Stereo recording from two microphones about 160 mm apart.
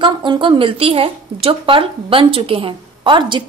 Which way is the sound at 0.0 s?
30° right (ahead or behind).